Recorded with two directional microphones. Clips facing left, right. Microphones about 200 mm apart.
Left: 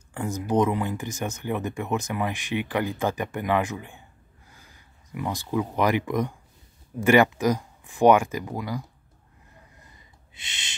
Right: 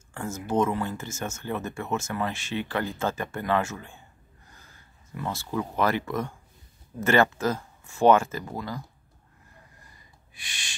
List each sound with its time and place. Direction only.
0.1 s speech: 15° left (ahead or behind)
9.8 s snort: 20° left (ahead or behind)